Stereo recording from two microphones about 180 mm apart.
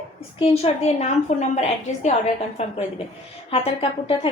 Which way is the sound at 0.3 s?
35° left (ahead or behind).